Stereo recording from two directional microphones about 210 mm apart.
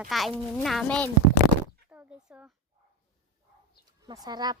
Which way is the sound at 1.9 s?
10° right (ahead or behind).